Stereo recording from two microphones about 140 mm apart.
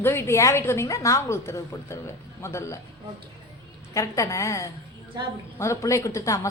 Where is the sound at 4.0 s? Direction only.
20° left (ahead or behind).